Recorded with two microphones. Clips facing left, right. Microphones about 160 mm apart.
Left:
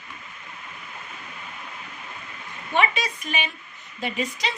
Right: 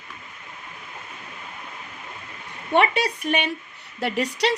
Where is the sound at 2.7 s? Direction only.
65° right (ahead or behind).